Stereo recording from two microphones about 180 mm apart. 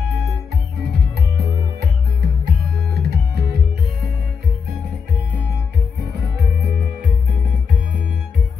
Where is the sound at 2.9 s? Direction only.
65° right (ahead or behind).